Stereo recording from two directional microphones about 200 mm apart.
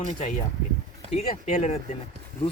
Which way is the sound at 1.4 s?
35° left (ahead or behind).